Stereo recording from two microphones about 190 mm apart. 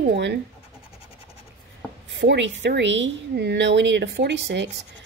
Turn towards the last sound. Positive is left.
turn(degrees=-65)  # may be behind; listen again after turning